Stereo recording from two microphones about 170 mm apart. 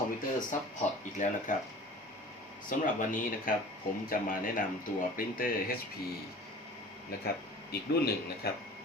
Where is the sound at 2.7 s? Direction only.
55° left (ahead or behind).